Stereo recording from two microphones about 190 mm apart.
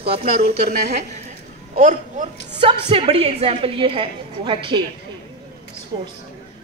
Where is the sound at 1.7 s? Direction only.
45° right (ahead or behind).